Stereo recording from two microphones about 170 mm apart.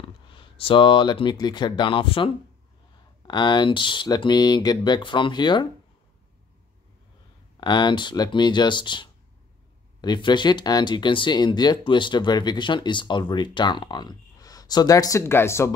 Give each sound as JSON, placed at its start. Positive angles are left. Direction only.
{"t": 0.3, "sound": "speech", "side_deg": 30}
{"t": 7.6, "sound": "speech", "side_deg": 25}